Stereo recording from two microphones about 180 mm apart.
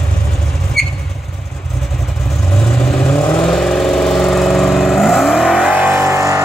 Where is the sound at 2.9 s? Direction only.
10° left (ahead or behind); by 6.4 s 15° right (ahead or behind).